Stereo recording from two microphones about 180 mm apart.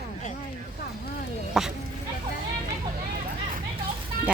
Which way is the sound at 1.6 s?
Centre (ahead or behind).